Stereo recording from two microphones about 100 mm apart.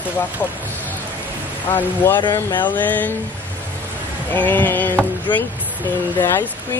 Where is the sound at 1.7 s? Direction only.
20° left (ahead or behind).